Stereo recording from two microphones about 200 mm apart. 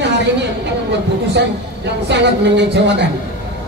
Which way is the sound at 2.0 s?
60° right (ahead or behind).